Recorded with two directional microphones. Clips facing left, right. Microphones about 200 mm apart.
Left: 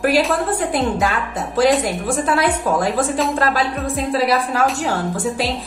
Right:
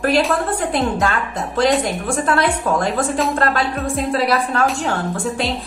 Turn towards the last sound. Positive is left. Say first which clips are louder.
# left 1 dB
turn(degrees=0)  # may be behind; listen again after turning